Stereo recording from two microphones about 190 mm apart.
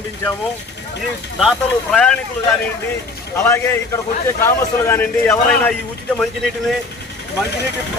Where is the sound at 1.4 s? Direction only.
Centre (ahead or behind).